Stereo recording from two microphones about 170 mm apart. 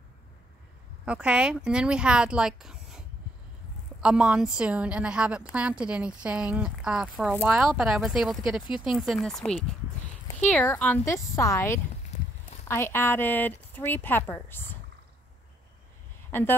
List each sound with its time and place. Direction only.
1.0 s a woman's voice: 5° right (ahead or behind); by 14.8 s 10° left (ahead or behind)
16.3 s speech: 15° left (ahead or behind)